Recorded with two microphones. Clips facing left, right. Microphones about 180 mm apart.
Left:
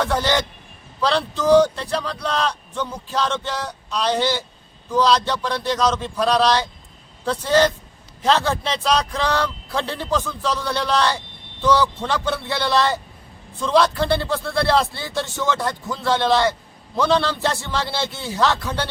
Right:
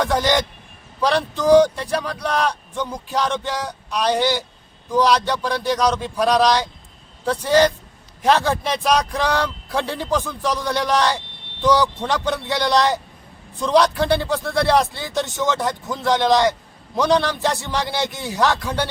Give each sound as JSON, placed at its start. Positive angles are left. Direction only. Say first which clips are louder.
{"t": 0.0, "sound": "a man's voice", "louder": "right 2 dB", "side_deg": -15}